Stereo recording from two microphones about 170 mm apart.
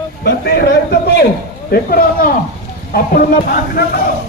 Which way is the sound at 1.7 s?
60° left (ahead or behind).